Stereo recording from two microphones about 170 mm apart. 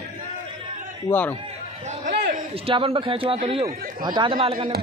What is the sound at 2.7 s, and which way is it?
A man's voice, 30° right (ahead or behind).